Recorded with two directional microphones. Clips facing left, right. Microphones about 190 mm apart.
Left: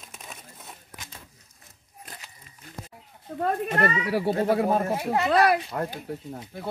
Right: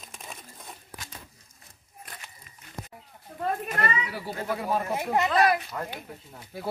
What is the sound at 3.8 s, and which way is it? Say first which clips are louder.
Speech: left 6 dB; 55° left (ahead or behind).